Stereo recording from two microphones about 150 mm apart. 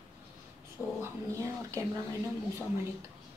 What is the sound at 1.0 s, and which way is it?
Speech, 20° right (ahead or behind).